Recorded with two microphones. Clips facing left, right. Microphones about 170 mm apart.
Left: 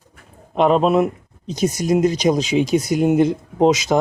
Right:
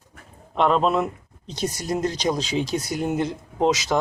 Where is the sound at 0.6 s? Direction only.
15° left (ahead or behind).